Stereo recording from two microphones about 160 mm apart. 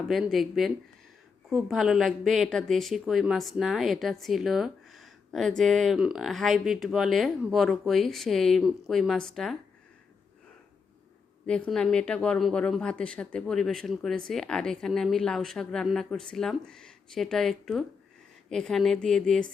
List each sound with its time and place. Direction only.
0.1 s a woman's voice: centre (ahead or behind)
11.4 s a woman's voice: 5° left (ahead or behind)